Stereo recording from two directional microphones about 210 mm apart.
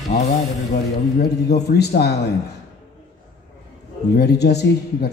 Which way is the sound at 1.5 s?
50° left (ahead or behind).